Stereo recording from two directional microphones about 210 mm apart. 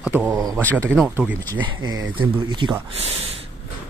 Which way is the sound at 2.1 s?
25° right (ahead or behind).